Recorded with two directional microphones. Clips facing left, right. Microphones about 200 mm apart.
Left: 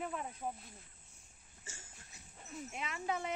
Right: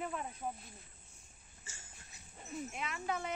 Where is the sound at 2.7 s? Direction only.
25° left (ahead or behind).